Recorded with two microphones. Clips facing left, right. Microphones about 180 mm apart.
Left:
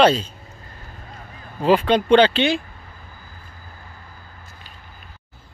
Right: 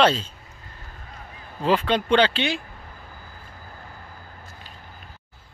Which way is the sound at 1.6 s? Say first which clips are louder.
Left 5 dB; 15° left (ahead or behind).